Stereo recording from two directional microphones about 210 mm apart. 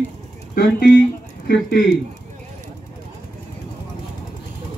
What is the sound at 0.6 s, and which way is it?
Speech, 45° left (ahead or behind).